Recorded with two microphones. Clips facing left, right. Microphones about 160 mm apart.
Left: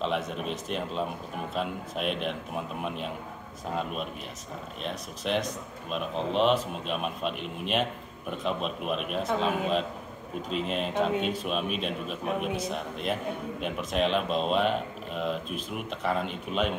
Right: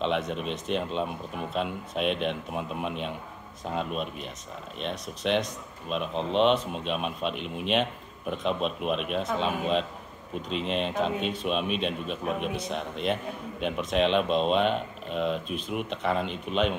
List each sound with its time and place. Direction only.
0.0 s a man's voice: 5° left (ahead or behind)
10.5 s a man's voice: 5° left (ahead or behind)